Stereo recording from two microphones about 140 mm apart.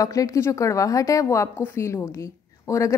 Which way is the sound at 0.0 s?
25° left (ahead or behind).